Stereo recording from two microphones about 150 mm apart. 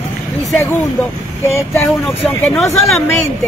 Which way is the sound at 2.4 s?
5° left (ahead or behind).